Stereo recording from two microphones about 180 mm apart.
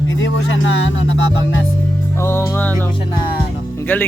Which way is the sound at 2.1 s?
15° left (ahead or behind).